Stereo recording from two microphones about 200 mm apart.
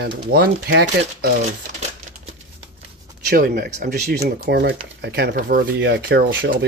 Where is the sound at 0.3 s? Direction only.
55° right (ahead or behind).